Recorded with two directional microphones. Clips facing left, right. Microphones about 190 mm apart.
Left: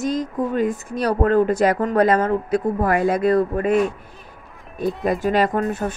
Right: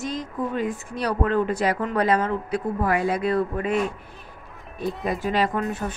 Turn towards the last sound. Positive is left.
turn(degrees=45)  # may be behind; listen again after turning